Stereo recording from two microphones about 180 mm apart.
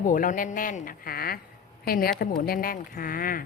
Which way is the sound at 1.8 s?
55° left (ahead or behind).